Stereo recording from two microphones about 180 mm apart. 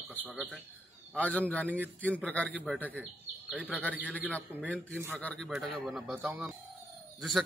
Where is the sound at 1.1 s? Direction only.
10° left (ahead or behind).